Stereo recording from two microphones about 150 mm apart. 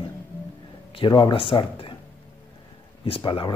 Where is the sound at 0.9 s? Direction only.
30° left (ahead or behind).